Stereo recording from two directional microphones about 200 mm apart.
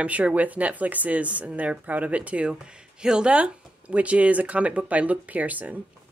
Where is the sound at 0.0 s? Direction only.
5° right (ahead or behind).